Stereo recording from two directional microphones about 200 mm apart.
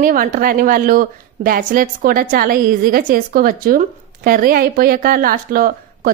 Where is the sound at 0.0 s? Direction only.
45° right (ahead or behind).